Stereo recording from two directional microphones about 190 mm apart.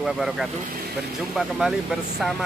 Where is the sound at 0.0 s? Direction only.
Centre (ahead or behind).